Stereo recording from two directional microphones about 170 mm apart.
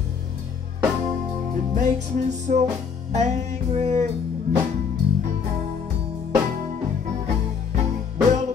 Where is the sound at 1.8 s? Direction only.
45° right (ahead or behind).